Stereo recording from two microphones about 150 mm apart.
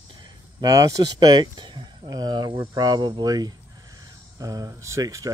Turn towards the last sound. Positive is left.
turn(degrees=-20)  # may be behind; listen again after turning